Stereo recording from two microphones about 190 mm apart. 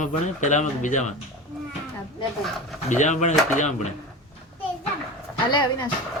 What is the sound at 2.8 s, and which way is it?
Speech, 40° left (ahead or behind).